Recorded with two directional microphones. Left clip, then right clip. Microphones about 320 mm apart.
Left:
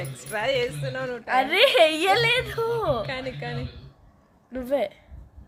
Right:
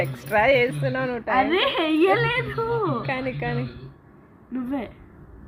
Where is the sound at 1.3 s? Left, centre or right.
Left.